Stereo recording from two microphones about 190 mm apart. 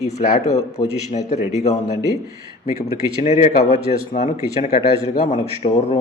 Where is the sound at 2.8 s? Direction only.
35° left (ahead or behind).